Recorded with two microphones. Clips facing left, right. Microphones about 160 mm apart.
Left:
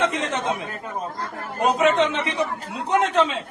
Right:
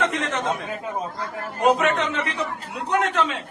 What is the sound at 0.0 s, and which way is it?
Speech, 25° left (ahead or behind).